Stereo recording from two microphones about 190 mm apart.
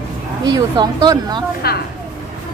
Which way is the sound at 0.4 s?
20° right (ahead or behind).